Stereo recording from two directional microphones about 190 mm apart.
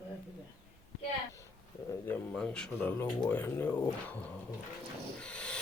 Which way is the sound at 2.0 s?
5° left (ahead or behind).